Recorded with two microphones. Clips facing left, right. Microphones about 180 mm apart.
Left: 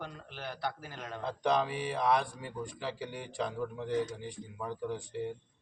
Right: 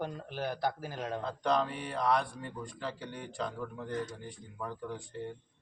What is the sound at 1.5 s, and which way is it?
Speech, centre (ahead or behind).